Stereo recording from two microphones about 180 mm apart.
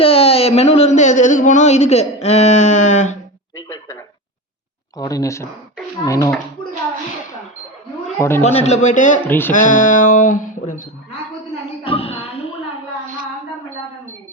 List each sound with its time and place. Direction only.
0.0 s speech: 35° left (ahead or behind)
4.9 s speech: 20° left (ahead or behind)
8.4 s a man's voice: 35° left (ahead or behind)
9.2 s music: 10° left (ahead or behind)
9.5 s speech: 45° left (ahead or behind)
11.8 s a sound: 30° left (ahead or behind)